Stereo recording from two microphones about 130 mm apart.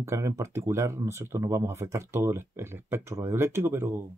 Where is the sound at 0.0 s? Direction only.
20° right (ahead or behind).